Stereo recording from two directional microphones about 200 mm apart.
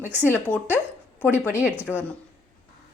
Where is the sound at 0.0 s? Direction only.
10° right (ahead or behind).